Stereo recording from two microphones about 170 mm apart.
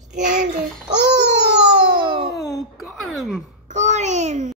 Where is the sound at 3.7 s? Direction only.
45° right (ahead or behind).